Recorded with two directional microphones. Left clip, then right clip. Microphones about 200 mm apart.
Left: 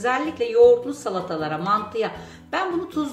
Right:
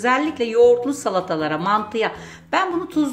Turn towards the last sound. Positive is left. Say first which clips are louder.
# right 4 dB
turn(degrees=-40)  # may be behind; listen again after turning